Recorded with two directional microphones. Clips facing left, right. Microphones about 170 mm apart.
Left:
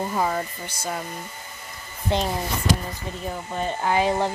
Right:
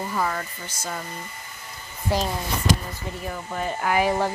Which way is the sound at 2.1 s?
25° left (ahead or behind).